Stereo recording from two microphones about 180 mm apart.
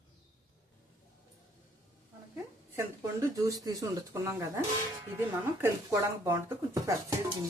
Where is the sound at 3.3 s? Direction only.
20° right (ahead or behind).